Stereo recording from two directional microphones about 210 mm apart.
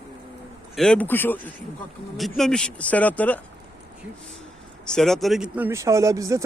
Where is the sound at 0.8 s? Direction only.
5° left (ahead or behind).